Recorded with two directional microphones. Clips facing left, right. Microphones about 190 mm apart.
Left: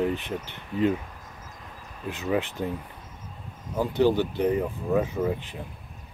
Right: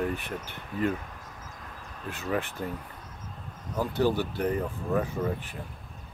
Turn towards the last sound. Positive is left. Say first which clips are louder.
# left 3 dB
turn(degrees=15)  # may be behind; listen again after turning